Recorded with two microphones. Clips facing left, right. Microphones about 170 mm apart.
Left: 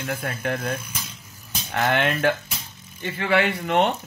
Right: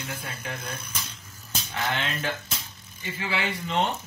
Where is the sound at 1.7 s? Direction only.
65° left (ahead or behind).